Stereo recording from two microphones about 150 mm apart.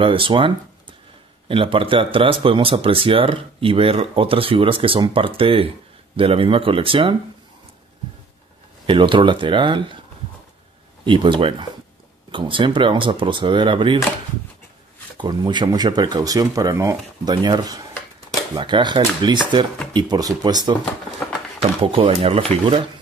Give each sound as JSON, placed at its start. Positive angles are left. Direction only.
{"t": 0.0, "sound": "speech", "side_deg": -35}
{"t": 8.8, "sound": "speech", "side_deg": -35}
{"t": 11.1, "sound": "speech", "side_deg": -35}
{"t": 15.1, "sound": "speech", "side_deg": -30}
{"t": 21.2, "sound": "a sound", "side_deg": 5}
{"t": 21.8, "sound": "speech", "side_deg": -35}